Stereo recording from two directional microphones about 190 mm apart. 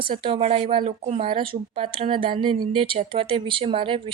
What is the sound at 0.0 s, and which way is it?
A woman's voice, 25° right (ahead or behind).